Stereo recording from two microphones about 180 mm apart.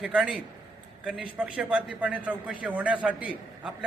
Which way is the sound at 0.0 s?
5° right (ahead or behind).